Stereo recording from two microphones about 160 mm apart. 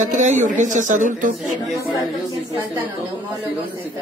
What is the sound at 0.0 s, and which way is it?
A man's voice, 50° right (ahead or behind).